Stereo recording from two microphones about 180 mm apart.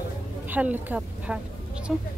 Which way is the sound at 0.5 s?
10° right (ahead or behind).